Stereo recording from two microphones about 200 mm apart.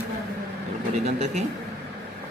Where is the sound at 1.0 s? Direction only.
35° right (ahead or behind).